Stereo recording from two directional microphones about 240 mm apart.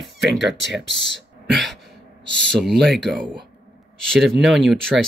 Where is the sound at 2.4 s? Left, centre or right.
Centre.